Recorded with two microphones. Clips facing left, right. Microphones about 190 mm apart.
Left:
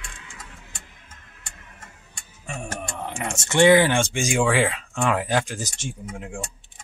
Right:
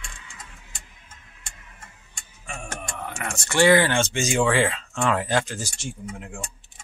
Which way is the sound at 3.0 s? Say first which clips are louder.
Left 2 dB; 25° left (ahead or behind).